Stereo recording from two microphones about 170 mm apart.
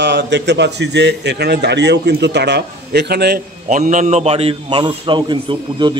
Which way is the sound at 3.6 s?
45° right (ahead or behind).